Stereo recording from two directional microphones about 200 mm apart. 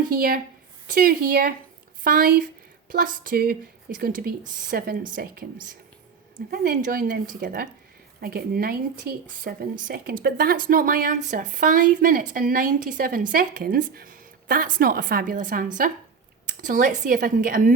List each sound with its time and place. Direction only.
0.1 s speech: 45° right (ahead or behind)
6.5 s speech: 45° right (ahead or behind)